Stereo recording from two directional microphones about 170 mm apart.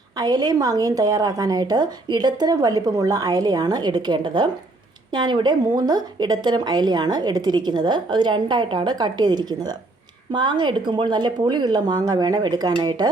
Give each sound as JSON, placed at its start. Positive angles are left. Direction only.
{"t": 0.2, "sound": "a woman's voice", "side_deg": -25}